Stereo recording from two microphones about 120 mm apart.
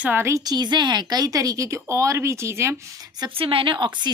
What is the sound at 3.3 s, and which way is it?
Speech, 50° right (ahead or behind).